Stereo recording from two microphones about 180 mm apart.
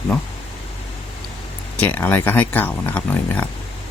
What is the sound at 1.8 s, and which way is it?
Speech, 10° left (ahead or behind).